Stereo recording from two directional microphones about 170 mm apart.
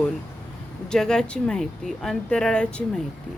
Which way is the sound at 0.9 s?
5° left (ahead or behind).